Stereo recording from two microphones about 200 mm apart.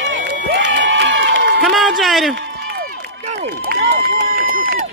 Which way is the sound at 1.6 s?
Centre (ahead or behind).